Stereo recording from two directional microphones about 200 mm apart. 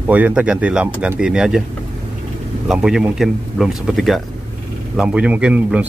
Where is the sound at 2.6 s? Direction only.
5° right (ahead or behind).